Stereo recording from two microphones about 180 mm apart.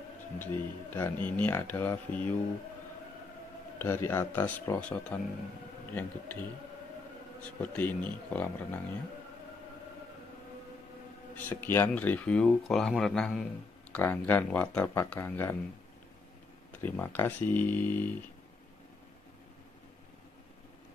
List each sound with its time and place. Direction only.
0.4 s speech: 10° left (ahead or behind)
3.7 s speech: 10° left (ahead or behind)
7.6 s speech: 10° left (ahead or behind)
11.3 s speech: 10° left (ahead or behind)
16.7 s speech: 10° left (ahead or behind)